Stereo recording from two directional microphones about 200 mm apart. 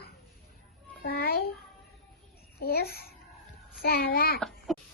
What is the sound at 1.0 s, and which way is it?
Babbling, 50° left (ahead or behind).